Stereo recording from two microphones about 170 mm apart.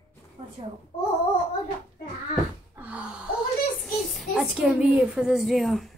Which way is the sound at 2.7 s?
10° right (ahead or behind).